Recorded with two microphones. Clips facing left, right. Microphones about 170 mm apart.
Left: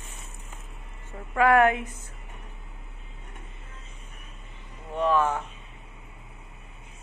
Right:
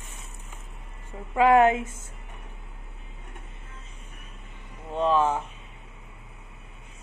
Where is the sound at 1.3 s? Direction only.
20° right (ahead or behind).